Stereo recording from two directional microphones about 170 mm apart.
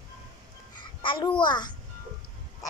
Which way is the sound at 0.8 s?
30° left (ahead or behind).